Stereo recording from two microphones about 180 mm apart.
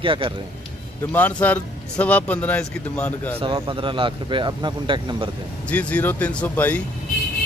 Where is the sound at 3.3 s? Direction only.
30° right (ahead or behind).